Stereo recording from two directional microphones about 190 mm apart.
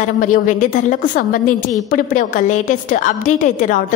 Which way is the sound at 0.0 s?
45° left (ahead or behind).